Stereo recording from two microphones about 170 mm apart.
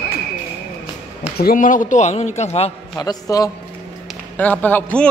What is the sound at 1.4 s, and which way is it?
A man's voice, 50° left (ahead or behind).